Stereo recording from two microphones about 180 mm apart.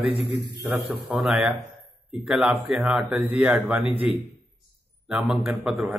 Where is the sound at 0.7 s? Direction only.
5° right (ahead or behind).